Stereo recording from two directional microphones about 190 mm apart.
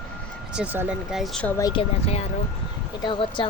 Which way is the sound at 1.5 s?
20° left (ahead or behind).